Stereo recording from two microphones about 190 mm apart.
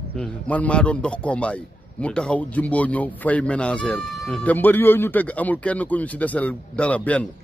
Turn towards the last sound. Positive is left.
turn(degrees=5)  # may be behind; listen again after turning